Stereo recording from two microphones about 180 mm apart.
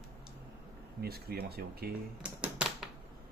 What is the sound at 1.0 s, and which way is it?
Speech, 60° right (ahead or behind).